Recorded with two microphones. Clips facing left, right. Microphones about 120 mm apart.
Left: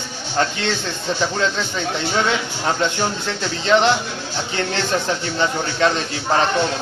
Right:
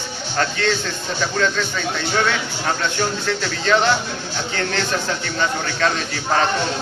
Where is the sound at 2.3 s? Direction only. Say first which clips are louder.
Left 2 dB; 20° left (ahead or behind).